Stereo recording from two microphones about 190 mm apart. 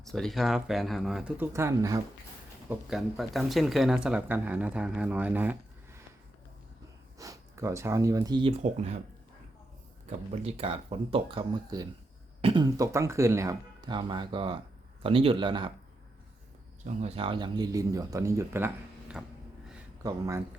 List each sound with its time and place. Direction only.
0.0 s speech: centre (ahead or behind); by 2.0 s 15° right (ahead or behind)
2.6 s speech: centre (ahead or behind)
7.2 s speech: 15° right (ahead or behind)
10.1 s speech: 30° right (ahead or behind)
16.8 s speech: 35° right (ahead or behind); by 20.4 s 15° right (ahead or behind)